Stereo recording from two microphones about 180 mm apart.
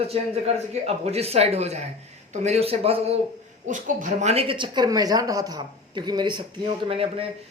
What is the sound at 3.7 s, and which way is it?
Speech, 45° right (ahead or behind).